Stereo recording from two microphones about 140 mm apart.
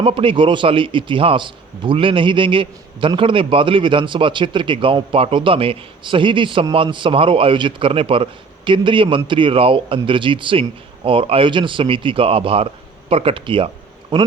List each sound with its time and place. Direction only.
0.0 s a man's voice: 40° right (ahead or behind)